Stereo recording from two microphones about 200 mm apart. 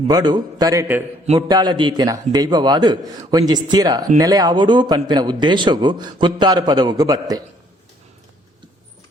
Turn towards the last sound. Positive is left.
turn(degrees=-20)  # may be behind; listen again after turning